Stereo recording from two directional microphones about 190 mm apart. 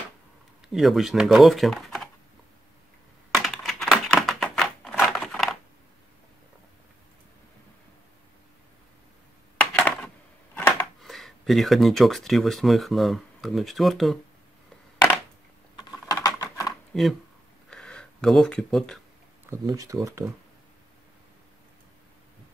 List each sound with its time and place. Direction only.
0.7 s speech: centre (ahead or behind)
3.4 s typewriter: centre (ahead or behind)
9.8 s a sound: 10° left (ahead or behind)
15.8 s typing: 20° left (ahead or behind)
16.9 s speech: centre (ahead or behind)
17.6 s a sound: 5° left (ahead or behind)
19.5 s speech: 20° right (ahead or behind)